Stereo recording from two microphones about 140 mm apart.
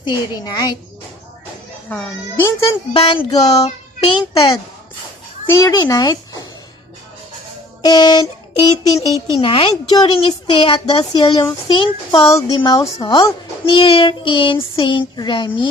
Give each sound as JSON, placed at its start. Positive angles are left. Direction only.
{"t": 0.0, "sound": "a woman's voice", "side_deg": 30}
{"t": 2.3, "sound": "a woman's voice", "side_deg": 20}
{"t": 2.9, "sound": "a child's voice", "side_deg": 40}
{"t": 5.5, "sound": "a child's voice", "side_deg": 20}
{"t": 7.8, "sound": "music", "side_deg": 30}
{"t": 9.3, "sound": "a child's voice", "side_deg": 40}